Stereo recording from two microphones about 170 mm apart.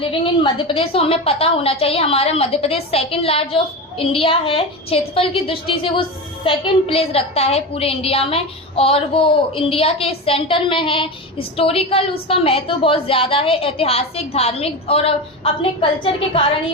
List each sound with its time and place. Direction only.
0.0 s a woman's voice: 30° left (ahead or behind)